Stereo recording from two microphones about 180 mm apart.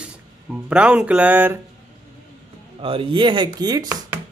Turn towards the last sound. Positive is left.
turn(degrees=-20)  # may be behind; listen again after turning